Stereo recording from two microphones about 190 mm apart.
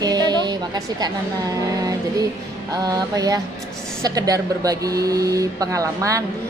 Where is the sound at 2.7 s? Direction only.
20° right (ahead or behind).